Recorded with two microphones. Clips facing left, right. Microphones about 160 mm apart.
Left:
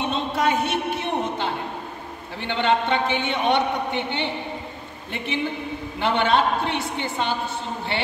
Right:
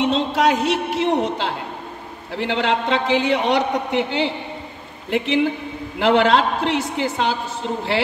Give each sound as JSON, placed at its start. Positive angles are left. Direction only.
{"t": 0.0, "sound": "a man's voice", "side_deg": -90}